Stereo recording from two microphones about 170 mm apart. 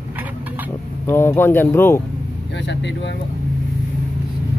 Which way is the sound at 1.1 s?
15° left (ahead or behind).